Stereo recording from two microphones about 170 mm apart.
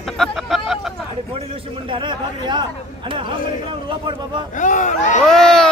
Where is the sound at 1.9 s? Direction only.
30° right (ahead or behind).